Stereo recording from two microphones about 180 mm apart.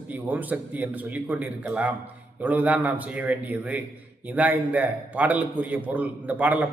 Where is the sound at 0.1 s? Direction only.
10° right (ahead or behind).